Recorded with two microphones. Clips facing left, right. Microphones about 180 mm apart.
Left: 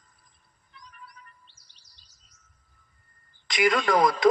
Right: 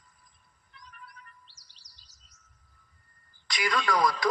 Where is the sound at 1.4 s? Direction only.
90° right.